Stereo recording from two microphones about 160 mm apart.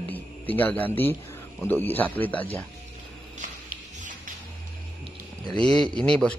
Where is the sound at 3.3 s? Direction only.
50° right (ahead or behind).